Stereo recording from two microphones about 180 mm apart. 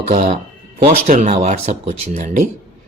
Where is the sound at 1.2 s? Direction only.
40° right (ahead or behind).